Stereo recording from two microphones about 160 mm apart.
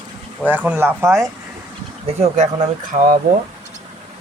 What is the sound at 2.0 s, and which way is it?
Speech, 40° right (ahead or behind).